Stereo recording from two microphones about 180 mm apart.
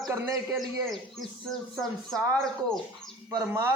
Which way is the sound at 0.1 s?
15° right (ahead or behind).